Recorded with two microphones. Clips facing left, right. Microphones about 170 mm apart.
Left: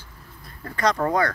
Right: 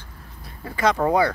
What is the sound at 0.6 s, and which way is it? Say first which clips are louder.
Speech: right 2 dB; 5° right (ahead or behind).